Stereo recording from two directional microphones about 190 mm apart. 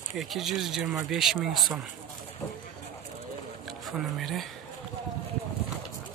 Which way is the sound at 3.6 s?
Centre (ahead or behind).